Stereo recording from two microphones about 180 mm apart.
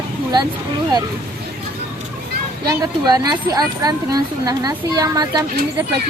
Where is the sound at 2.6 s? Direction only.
20° right (ahead or behind).